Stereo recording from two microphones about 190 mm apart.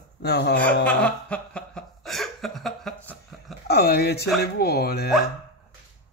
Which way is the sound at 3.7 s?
55° left (ahead or behind).